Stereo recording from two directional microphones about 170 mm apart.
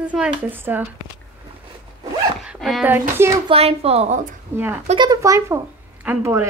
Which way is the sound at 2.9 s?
15° right (ahead or behind).